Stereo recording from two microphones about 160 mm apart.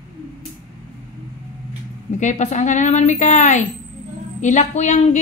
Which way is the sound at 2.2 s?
50° left (ahead or behind).